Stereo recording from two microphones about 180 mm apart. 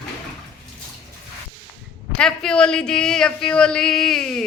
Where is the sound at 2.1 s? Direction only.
5° left (ahead or behind).